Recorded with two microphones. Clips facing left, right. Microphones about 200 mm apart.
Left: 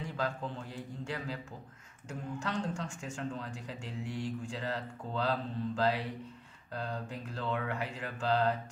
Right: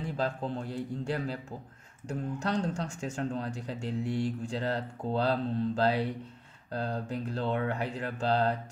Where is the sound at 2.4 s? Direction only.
40° right (ahead or behind).